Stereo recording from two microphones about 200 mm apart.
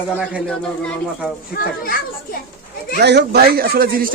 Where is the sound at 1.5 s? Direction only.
50° left (ahead or behind).